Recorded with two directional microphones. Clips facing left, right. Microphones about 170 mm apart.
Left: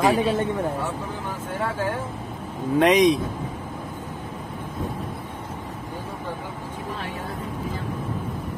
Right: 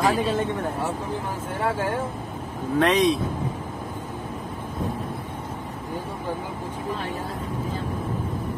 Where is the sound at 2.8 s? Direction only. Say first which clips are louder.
Left 3 dB; 15° left (ahead or behind).